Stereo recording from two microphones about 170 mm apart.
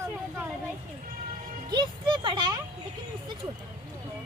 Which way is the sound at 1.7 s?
25° right (ahead or behind).